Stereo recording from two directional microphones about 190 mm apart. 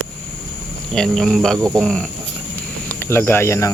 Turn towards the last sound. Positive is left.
turn(degrees=15)  # may be behind; listen again after turning